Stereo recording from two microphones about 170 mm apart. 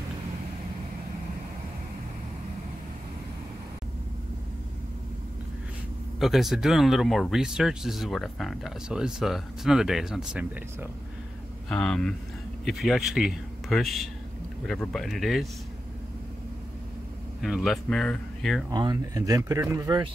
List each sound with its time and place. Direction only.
6.1 s speech: centre (ahead or behind)
11.7 s speech: 5° left (ahead or behind)
17.4 s speech: centre (ahead or behind)
18.7 s speech: 25° right (ahead or behind)